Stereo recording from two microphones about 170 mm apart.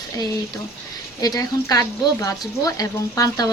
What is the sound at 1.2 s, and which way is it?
Speech, 20° left (ahead or behind).